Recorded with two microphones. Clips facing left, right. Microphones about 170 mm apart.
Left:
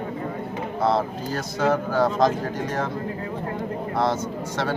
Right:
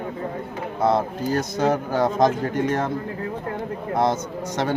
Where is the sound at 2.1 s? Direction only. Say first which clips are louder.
Right 1 dB; 50° right (ahead or behind).